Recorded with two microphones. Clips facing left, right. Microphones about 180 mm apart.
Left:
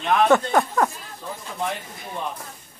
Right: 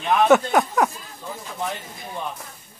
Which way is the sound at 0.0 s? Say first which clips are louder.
Right 1 dB; 5° right (ahead or behind).